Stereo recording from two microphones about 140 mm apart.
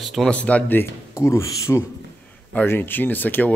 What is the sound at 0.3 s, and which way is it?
Speech, 10° left (ahead or behind).